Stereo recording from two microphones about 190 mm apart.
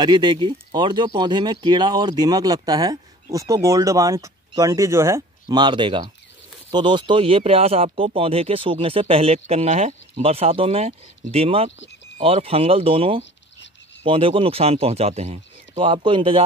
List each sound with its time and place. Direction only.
0.0 s speech: 25° right (ahead or behind)